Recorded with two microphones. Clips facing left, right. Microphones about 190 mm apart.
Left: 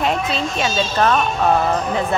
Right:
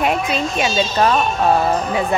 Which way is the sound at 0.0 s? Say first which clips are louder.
Right 1 dB; 15° right (ahead or behind).